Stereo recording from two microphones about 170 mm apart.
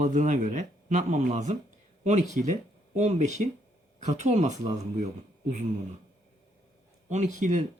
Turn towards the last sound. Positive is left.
turn(degrees=-45)  # may be behind; listen again after turning